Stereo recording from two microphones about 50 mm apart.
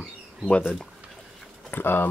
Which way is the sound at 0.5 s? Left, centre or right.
Left.